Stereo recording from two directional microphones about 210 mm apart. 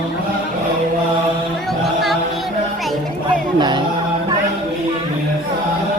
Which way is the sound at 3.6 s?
20° right (ahead or behind).